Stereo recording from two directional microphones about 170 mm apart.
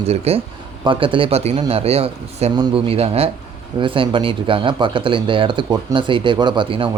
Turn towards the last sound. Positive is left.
turn(degrees=-30)  # may be behind; listen again after turning